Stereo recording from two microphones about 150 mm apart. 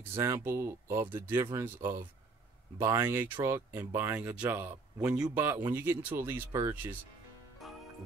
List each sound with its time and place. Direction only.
0.2 s speech: 20° right (ahead or behind)
7.6 s music: centre (ahead or behind)